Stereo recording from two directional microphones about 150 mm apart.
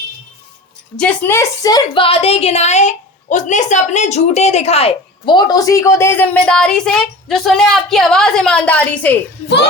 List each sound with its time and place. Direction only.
0.9 s a woman's voice: 10° left (ahead or behind)